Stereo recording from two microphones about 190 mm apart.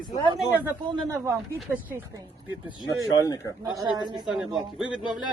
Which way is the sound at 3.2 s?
20° left (ahead or behind).